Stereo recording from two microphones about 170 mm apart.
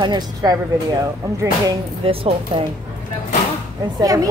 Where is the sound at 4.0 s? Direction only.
20° right (ahead or behind).